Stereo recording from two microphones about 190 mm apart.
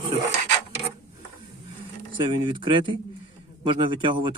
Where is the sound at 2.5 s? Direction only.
25° right (ahead or behind).